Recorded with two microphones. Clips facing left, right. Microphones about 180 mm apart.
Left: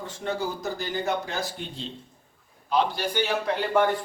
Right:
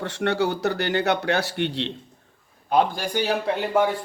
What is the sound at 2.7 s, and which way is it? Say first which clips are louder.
Speech: right 4 dB; 50° right (ahead or behind).